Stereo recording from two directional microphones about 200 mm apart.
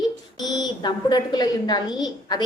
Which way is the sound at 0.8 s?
20° left (ahead or behind).